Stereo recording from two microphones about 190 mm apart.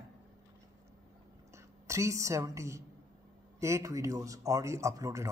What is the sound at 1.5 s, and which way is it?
A woman's voice, 15° right (ahead or behind).